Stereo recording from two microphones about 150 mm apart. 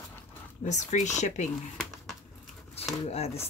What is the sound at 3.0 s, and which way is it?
Speech, 45° left (ahead or behind).